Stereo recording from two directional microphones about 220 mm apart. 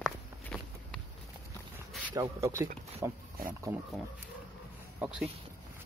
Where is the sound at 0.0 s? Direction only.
Centre (ahead or behind).